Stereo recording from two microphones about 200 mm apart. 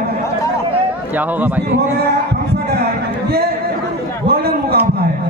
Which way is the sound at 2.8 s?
50° right (ahead or behind).